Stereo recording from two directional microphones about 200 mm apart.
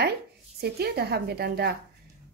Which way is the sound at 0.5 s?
50° right (ahead or behind).